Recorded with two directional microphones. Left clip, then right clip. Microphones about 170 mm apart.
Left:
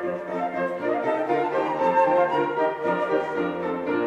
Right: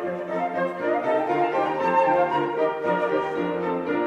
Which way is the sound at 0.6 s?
Centre (ahead or behind).